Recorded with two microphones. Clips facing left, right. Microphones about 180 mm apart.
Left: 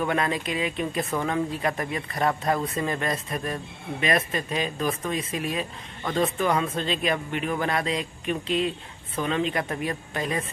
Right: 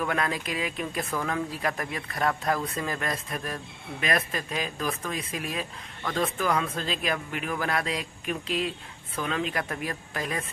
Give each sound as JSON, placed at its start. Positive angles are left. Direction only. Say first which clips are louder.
{"t": 0.1, "sound": "speech", "louder": "left 3 dB", "side_deg": 0}
{"t": 6.0, "sound": "speech", "louder": "left 3 dB", "side_deg": 25}
{"t": 6.3, "sound": "speech", "louder": "left 3 dB", "side_deg": 0}